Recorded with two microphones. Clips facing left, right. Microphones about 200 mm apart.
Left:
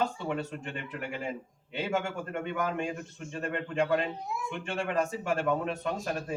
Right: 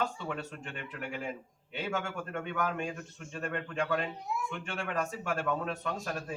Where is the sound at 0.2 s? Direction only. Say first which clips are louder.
Left 5 dB; 20° left (ahead or behind).